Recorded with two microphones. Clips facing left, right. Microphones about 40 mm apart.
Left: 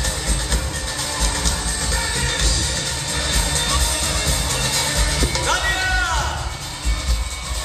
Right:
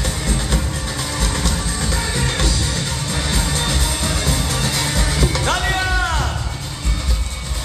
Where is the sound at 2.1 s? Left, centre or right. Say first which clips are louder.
Right 2 dB; centre.